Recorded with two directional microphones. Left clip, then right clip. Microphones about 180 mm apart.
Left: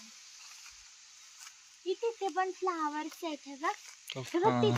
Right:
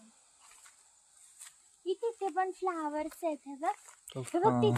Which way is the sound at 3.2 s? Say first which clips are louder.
Right 6 dB; 60° right (ahead or behind).